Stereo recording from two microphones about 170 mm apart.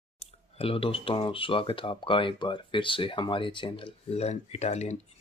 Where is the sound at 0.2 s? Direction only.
35° left (ahead or behind).